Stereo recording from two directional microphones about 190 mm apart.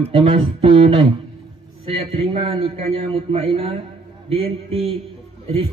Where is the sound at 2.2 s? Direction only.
30° right (ahead or behind).